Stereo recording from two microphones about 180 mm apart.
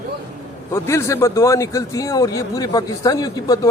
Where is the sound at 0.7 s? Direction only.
15° left (ahead or behind).